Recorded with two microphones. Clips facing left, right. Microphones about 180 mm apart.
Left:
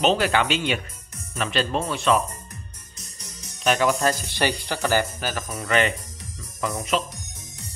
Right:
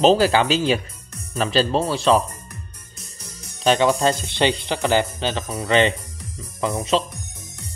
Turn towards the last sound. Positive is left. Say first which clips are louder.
# right 4 dB
turn(degrees=-30)  # may be behind; listen again after turning